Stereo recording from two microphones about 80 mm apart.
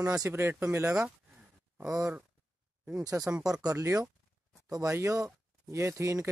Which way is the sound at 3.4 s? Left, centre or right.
Centre.